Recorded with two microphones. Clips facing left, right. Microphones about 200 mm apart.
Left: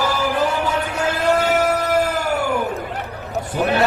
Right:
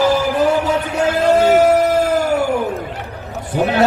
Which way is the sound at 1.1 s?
25° right (ahead or behind).